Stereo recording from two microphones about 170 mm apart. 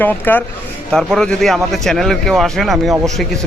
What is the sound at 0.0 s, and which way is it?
A man's voice, 10° left (ahead or behind).